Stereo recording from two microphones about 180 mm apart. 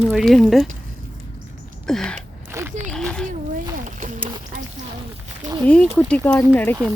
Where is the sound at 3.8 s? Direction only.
45° right (ahead or behind).